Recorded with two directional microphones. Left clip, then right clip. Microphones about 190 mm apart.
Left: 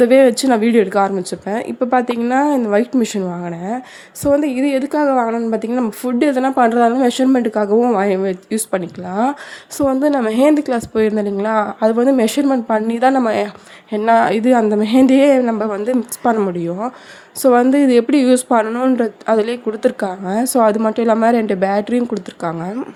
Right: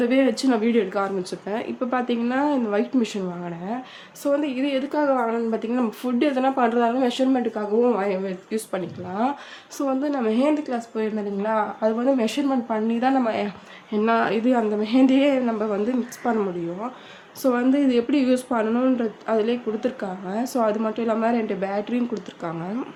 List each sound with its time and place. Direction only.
0.0 s a woman's voice: 45° left (ahead or behind)